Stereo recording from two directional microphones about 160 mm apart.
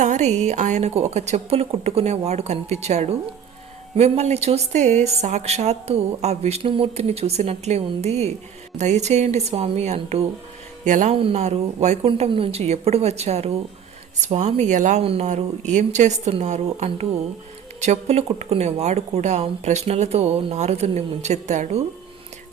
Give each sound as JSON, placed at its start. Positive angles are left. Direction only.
{"t": 0.0, "sound": "speech", "side_deg": -45}
{"t": 11.2, "sound": "speech", "side_deg": -40}
{"t": 15.0, "sound": "speech", "side_deg": -35}
{"t": 15.3, "sound": "speech", "side_deg": -50}